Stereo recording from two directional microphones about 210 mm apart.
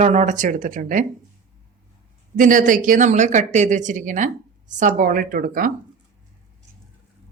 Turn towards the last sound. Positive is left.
turn(degrees=-40)  # may be behind; listen again after turning